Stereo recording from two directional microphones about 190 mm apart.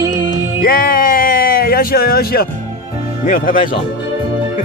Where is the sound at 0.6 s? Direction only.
50° left (ahead or behind).